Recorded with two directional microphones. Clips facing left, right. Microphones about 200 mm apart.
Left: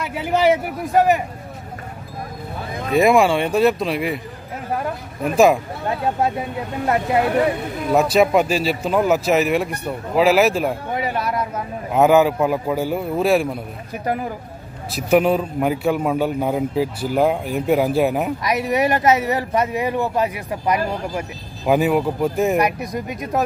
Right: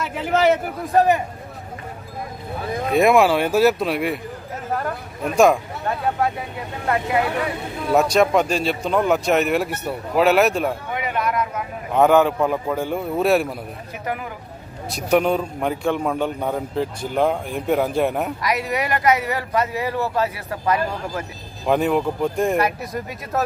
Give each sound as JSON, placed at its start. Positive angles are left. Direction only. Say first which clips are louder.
{"t": 0.1, "sound": "a man's voice", "louder": "left 1 dB", "side_deg": 10}
{"t": 2.9, "sound": "a man's voice", "louder": "left 1 dB", "side_deg": 0}
{"t": 5.9, "sound": "speech", "louder": "left 1 dB", "side_deg": 25}
{"t": 7.9, "sound": "a man's voice", "louder": "left 1 dB", "side_deg": 0}
{"t": 10.9, "sound": "a sound", "louder": "left 1 dB", "side_deg": 35}
{"t": 11.9, "sound": "a man's voice", "louder": "left 1 dB", "side_deg": 5}
{"t": 14.0, "sound": "speech", "louder": "left 5 dB", "side_deg": 35}
{"t": 14.9, "sound": "a man's voice", "louder": "left 2 dB", "side_deg": 5}
{"t": 18.4, "sound": "speech", "louder": "left 6 dB", "side_deg": 20}
{"t": 21.6, "sound": "a man's voice", "louder": "left 2 dB", "side_deg": 5}
{"t": 22.6, "sound": "a man's voice", "louder": "left 2 dB", "side_deg": 15}